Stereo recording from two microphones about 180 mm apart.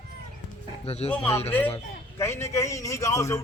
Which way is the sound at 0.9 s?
35° left (ahead or behind).